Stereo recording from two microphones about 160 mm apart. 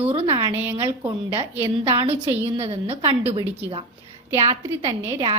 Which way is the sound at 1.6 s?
35° right (ahead or behind).